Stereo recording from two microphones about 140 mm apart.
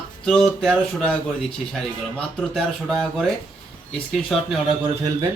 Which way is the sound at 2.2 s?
5° left (ahead or behind).